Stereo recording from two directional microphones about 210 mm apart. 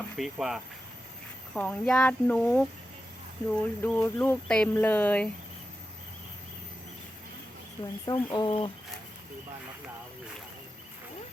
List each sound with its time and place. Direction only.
0.2 s speech: centre (ahead or behind)
8.0 s speech: 20° left (ahead or behind)